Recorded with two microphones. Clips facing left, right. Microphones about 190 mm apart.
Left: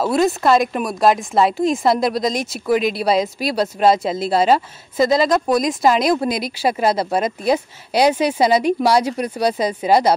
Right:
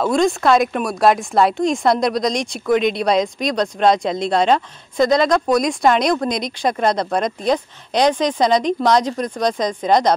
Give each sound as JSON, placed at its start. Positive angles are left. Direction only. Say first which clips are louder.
{"t": 0.0, "sound": "a woman's voice", "louder": "even", "side_deg": 5}